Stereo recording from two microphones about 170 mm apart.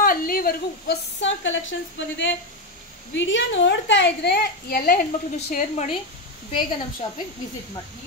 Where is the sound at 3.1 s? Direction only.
90° left; by 5.1 s 60° left (ahead or behind).